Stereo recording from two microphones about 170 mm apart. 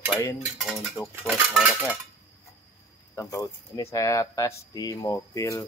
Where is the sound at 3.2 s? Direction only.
20° left (ahead or behind).